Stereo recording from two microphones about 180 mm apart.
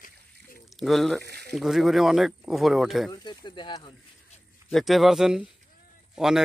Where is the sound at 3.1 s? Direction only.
25° left (ahead or behind).